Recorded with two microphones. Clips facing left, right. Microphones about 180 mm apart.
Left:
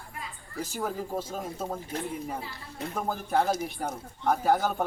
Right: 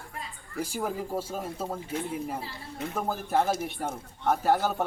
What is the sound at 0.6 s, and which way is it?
Speech, 10° right (ahead or behind).